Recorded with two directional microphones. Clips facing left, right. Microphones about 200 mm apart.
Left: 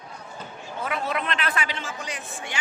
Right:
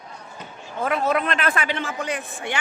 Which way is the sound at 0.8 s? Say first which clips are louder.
Right 6 dB; 45° right (ahead or behind).